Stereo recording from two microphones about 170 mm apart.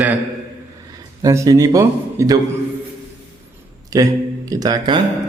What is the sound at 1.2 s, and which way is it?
A man's voice, 20° right (ahead or behind).